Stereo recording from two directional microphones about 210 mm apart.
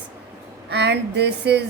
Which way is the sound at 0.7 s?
55° right (ahead or behind).